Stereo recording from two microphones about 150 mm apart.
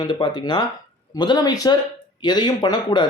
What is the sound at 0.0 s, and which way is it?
Speech, 30° left (ahead or behind).